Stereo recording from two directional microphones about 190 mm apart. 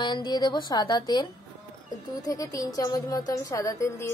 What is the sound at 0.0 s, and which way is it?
A woman's voice, 25° left (ahead or behind).